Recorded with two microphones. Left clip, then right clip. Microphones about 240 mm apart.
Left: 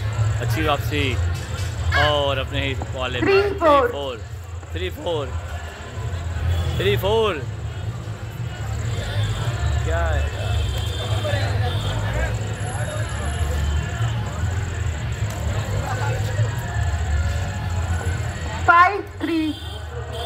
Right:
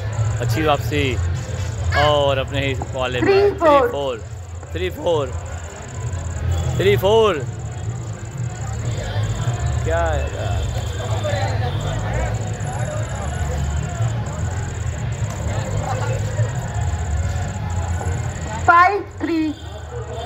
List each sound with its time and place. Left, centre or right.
0.5 s speech: centre
6.8 s speech: right
9.8 s speech: right
18.7 s a sound: right